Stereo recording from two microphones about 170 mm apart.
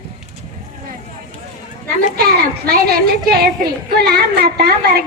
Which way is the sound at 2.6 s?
65° right (ahead or behind).